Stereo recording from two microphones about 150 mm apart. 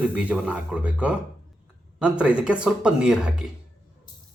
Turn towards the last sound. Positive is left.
turn(degrees=-5)  # may be behind; listen again after turning